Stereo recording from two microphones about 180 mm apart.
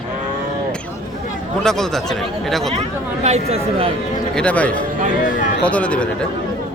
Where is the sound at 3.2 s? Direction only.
35° right (ahead or behind).